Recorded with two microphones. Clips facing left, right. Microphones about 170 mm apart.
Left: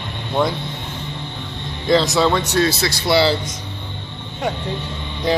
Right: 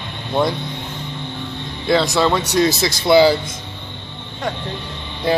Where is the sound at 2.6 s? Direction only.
20° right (ahead or behind).